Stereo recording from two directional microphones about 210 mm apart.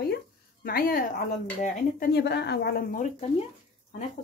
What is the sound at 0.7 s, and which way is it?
A woman's voice, 45° left (ahead or behind).